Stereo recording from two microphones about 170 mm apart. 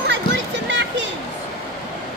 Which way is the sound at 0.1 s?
90° right.